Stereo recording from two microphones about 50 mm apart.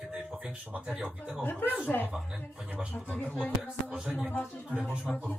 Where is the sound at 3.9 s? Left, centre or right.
Centre.